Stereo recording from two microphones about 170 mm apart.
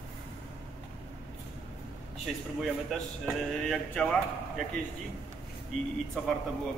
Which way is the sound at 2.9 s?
Centre (ahead or behind).